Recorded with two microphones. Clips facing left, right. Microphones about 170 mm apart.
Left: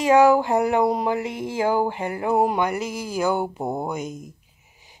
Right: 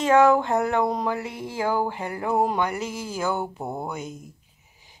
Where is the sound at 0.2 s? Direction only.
10° left (ahead or behind).